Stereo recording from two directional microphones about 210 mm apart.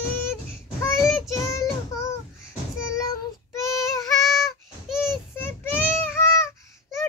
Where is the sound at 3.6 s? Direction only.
15° left (ahead or behind).